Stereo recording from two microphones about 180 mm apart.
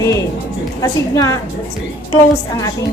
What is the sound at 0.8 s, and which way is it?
Speech, 15° left (ahead or behind).